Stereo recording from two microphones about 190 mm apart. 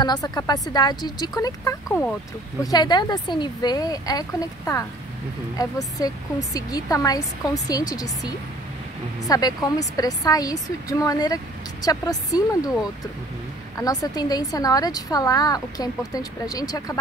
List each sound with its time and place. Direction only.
0.0 s a woman's voice: 20° left (ahead or behind)
13.7 s a woman's voice: 20° left (ahead or behind)